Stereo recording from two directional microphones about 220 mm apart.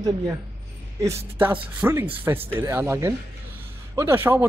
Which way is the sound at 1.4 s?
10° right (ahead or behind).